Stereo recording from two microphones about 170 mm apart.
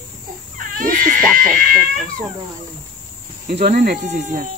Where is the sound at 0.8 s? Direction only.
55° right (ahead or behind).